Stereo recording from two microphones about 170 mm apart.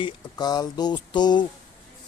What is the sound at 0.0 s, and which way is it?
Speech, 25° left (ahead or behind).